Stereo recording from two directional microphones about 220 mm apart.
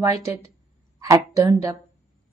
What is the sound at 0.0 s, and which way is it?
A woman's voice, 15° right (ahead or behind).